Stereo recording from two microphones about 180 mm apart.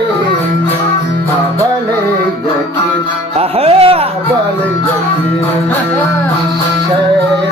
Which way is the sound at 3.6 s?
35° right (ahead or behind).